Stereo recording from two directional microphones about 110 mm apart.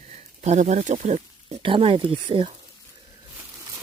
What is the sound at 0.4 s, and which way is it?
Speech, 90° right.